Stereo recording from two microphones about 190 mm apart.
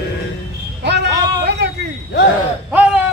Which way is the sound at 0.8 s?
60° right (ahead or behind).